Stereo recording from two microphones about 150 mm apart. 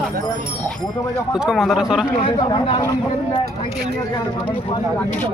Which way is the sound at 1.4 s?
5° right (ahead or behind).